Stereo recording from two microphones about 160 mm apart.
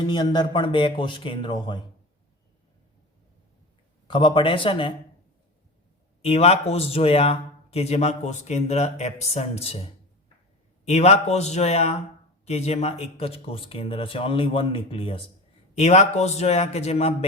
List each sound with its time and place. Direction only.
0.1 s speech: 30° left (ahead or behind)
4.1 s a man's voice: 30° left (ahead or behind)
6.2 s a man's voice: 40° left (ahead or behind)
10.8 s a man's voice: 45° left (ahead or behind)